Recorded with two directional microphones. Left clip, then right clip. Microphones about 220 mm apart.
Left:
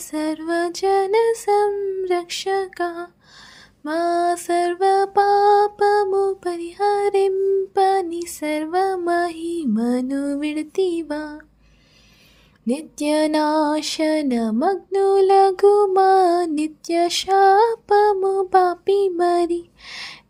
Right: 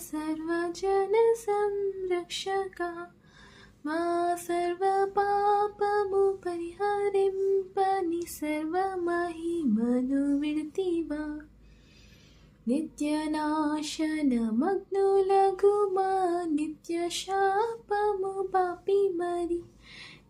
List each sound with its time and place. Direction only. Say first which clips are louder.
0.1 s music: left 9 dB; 35° left (ahead or behind)
12.6 s music: left 7 dB; 40° left (ahead or behind)